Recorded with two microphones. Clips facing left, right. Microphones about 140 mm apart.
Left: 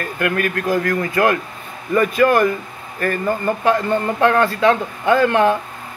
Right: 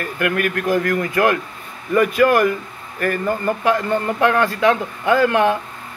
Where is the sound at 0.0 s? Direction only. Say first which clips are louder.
Even; 15° right (ahead or behind).